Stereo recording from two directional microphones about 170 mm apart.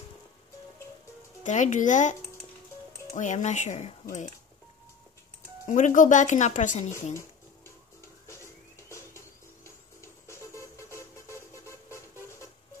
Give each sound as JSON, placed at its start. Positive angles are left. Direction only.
{"t": 1.4, "sound": "speech", "side_deg": 45}
{"t": 3.2, "sound": "speech", "side_deg": 45}
{"t": 5.7, "sound": "speech", "side_deg": 45}
{"t": 8.3, "sound": "music", "side_deg": 15}
{"t": 10.2, "sound": "vehicle", "side_deg": 15}